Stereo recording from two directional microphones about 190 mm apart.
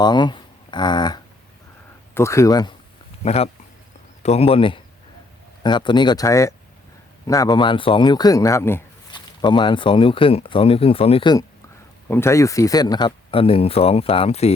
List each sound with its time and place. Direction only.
0.0 s speech: 25° left (ahead or behind)
3.2 s speech: 35° left (ahead or behind); by 8.8 s 15° left (ahead or behind)
9.1 s speech: 25° left (ahead or behind)
12.0 s speech: 10° left (ahead or behind); by 14.5 s 35° left (ahead or behind)